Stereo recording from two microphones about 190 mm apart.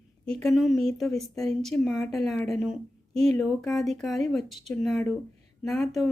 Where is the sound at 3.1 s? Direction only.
30° right (ahead or behind).